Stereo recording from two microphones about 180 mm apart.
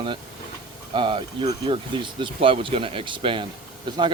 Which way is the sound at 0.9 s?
30° right (ahead or behind).